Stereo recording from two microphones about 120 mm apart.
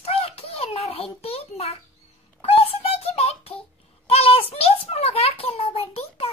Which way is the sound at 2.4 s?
55° left (ahead or behind).